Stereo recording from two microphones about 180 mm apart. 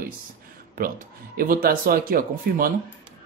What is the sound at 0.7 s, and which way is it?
Speech, 55° right (ahead or behind).